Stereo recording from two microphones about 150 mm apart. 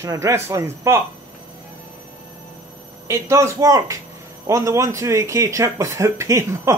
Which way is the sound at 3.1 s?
20° right (ahead or behind).